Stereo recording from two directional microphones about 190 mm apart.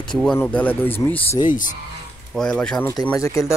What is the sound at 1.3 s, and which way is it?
Speech, 45° left (ahead or behind).